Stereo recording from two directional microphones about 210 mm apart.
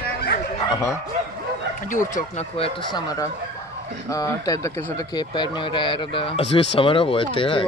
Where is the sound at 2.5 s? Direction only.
25° left (ahead or behind).